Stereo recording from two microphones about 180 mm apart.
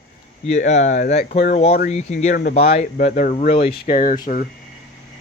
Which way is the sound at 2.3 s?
50° left (ahead or behind).